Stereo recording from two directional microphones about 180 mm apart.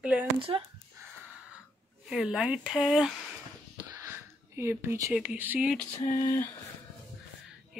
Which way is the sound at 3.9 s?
15° right (ahead or behind).